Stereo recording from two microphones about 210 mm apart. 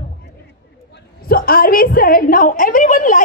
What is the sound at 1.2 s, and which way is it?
A woman's voice, 45° left (ahead or behind).